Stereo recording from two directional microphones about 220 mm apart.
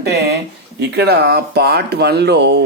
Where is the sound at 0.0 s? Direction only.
50° right (ahead or behind).